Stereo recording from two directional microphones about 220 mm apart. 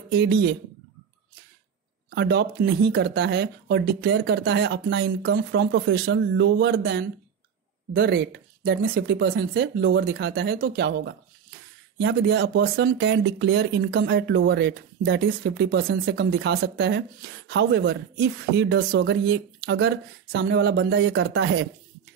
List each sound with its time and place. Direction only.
0.1 s speech: 50° right (ahead or behind)
2.1 s speech: 45° right (ahead or behind)